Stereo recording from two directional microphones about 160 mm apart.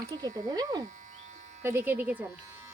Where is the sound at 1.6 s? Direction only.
15° right (ahead or behind).